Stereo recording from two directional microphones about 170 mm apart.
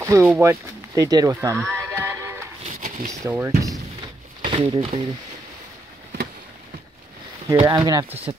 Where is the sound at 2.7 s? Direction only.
50° right (ahead or behind).